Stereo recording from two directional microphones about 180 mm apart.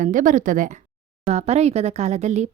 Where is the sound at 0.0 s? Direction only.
45° right (ahead or behind).